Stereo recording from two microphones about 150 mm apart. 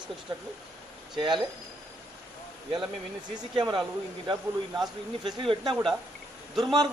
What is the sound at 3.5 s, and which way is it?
Speech, 30° right (ahead or behind).